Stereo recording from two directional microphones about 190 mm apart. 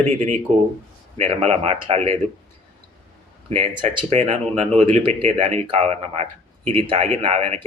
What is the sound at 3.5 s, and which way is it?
Speech, 25° right (ahead or behind).